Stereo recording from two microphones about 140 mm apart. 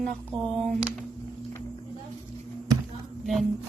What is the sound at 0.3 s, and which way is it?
Speech, 35° right (ahead or behind).